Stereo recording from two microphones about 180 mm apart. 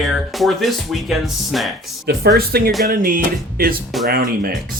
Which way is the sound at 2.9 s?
50° right (ahead or behind).